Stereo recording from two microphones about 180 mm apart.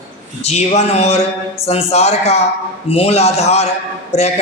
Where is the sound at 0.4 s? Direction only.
35° left (ahead or behind).